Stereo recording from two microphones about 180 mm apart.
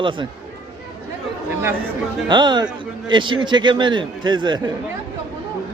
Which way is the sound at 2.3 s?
25° right (ahead or behind).